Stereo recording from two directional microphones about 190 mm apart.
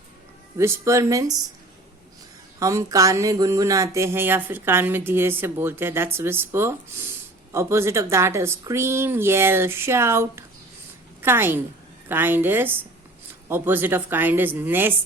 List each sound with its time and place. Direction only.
0.5 s speech: 15° right (ahead or behind)
2.6 s a woman's voice: 15° right (ahead or behind)